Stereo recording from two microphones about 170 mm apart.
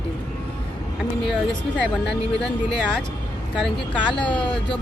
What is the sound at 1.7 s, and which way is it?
A woman's voice, 5° left (ahead or behind).